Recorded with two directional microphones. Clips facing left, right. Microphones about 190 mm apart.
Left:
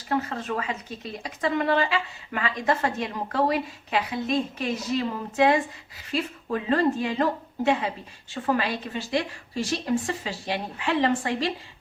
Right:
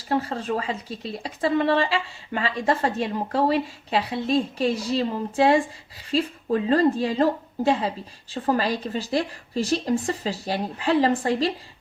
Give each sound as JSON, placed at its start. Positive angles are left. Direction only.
{"t": 0.1, "sound": "speech", "side_deg": -30}